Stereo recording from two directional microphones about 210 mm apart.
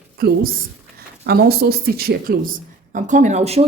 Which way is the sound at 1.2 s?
50° right (ahead or behind).